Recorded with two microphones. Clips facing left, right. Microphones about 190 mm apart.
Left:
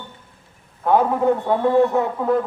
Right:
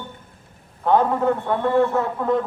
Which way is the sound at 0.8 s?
10° left (ahead or behind).